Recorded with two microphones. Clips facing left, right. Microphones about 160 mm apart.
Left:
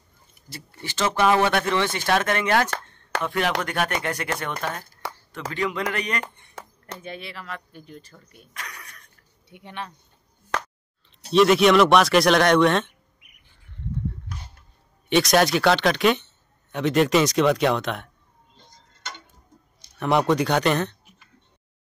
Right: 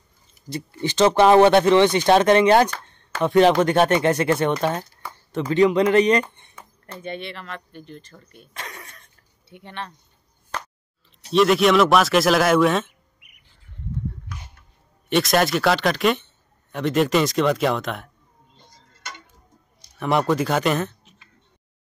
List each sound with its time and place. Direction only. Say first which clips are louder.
0.5 s speech: right 11 dB; 20° right (ahead or behind)
5.0 s a sound: left 3 dB; 85° left
5.5 s speech: right 11 dB; 20° right (ahead or behind)
6.6 s a sound: left 5 dB; 90° left
7.0 s speech: right 6 dB; 5° left (ahead or behind)
8.5 s a sound: right 3 dB; 25° right (ahead or behind)
9.5 s speech: right 1 dB; 10° left (ahead or behind)
11.3 s speech: even; centre (ahead or behind)
15.0 s speech: even; centre (ahead or behind)
20.0 s speech: even; centre (ahead or behind)